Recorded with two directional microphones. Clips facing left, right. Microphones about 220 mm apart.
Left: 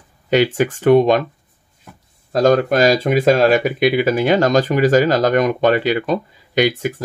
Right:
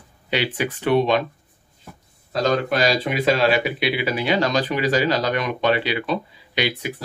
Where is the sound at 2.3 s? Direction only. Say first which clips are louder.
Left 7 dB; 45° left (ahead or behind).